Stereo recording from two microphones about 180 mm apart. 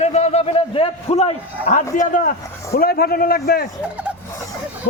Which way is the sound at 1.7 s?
45° left (ahead or behind).